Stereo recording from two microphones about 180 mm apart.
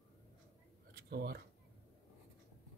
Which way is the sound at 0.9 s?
60° right (ahead or behind).